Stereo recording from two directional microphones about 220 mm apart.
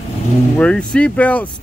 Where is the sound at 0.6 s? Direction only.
5° left (ahead or behind).